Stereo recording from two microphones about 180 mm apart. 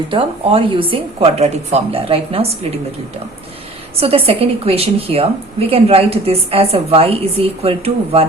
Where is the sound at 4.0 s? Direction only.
30° right (ahead or behind).